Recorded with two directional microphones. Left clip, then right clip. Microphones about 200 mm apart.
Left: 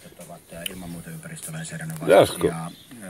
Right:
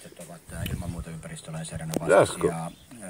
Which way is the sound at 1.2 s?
40° right (ahead or behind).